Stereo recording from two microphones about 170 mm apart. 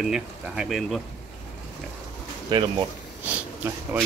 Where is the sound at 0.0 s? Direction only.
5° right (ahead or behind).